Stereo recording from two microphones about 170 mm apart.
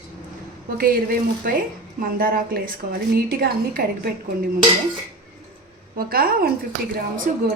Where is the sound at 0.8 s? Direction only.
60° right (ahead or behind).